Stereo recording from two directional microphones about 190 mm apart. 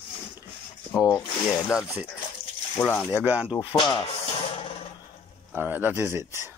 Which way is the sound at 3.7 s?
25° left (ahead or behind).